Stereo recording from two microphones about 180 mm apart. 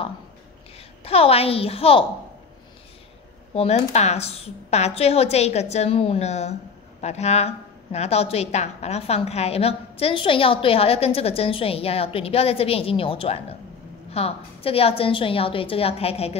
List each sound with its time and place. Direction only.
0.7 s a woman's voice: 35° left (ahead or behind)
3.5 s a woman's voice: 35° left (ahead or behind)